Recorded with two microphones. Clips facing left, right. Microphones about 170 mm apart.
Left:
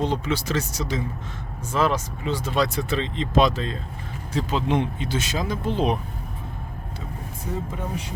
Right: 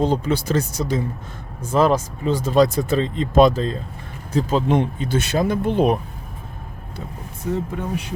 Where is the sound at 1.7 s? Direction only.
40° right (ahead or behind); by 6.0 s 55° right (ahead or behind).